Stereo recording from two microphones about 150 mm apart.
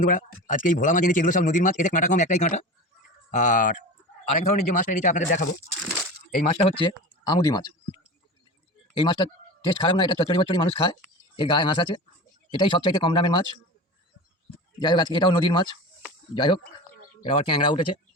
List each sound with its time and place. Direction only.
0.0 s speech: 60° left (ahead or behind)
6.7 s speech: 35° left (ahead or behind)
9.0 s speech: 30° left (ahead or behind)
14.8 s speech: 30° left (ahead or behind)